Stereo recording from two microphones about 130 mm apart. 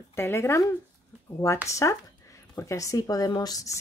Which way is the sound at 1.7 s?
25° left (ahead or behind).